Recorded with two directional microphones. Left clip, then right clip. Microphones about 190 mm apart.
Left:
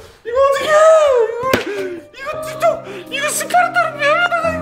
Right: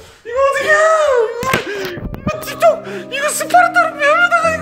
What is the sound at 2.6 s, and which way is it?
Music, 30° right (ahead or behind).